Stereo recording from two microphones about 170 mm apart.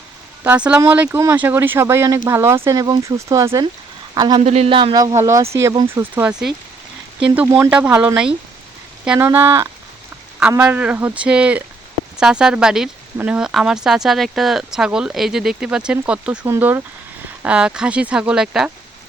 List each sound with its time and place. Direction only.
0.4 s speech: 5° right (ahead or behind); by 4.4 s 25° right (ahead or behind)
4.4 s speech: 35° right (ahead or behind)
5.9 s speech: 15° right (ahead or behind)
7.3 s speech: 10° right (ahead or behind)